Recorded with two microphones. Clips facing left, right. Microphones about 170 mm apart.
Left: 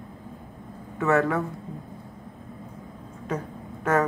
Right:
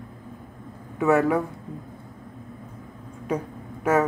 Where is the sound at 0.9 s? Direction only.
10° right (ahead or behind).